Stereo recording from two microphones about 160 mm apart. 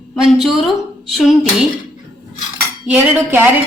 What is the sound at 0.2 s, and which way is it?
Speech, centre (ahead or behind).